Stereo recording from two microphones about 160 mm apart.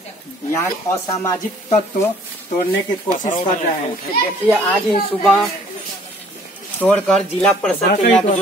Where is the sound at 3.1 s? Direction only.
55° left (ahead or behind).